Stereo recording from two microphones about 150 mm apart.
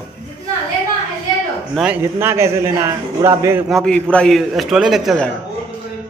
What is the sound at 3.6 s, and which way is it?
A man's voice, 5° left (ahead or behind).